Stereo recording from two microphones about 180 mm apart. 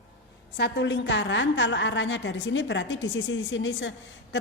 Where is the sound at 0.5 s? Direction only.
70° left (ahead or behind).